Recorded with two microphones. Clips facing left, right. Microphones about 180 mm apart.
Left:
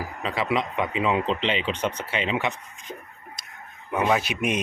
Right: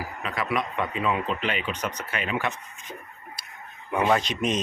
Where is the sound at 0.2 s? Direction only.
30° left (ahead or behind).